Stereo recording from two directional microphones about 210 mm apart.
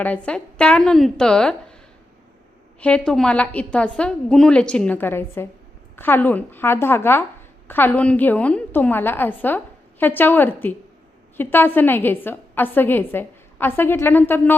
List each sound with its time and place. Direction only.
0.0 s a woman's voice: 5° left (ahead or behind)
2.8 s a woman's voice: 5° left (ahead or behind)